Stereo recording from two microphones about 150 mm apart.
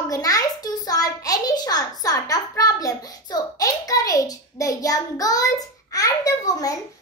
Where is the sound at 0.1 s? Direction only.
25° left (ahead or behind).